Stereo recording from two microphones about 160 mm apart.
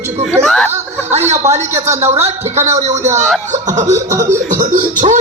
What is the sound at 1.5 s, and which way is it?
A man's voice, 45° right (ahead or behind).